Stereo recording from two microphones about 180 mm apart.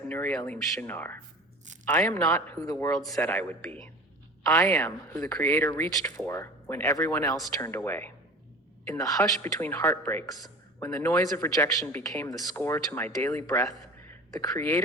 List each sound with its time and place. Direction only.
0.1 s speech: 10° left (ahead or behind)